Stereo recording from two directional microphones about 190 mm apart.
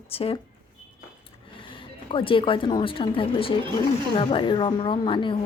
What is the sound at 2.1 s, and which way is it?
A woman's voice, 25° left (ahead or behind).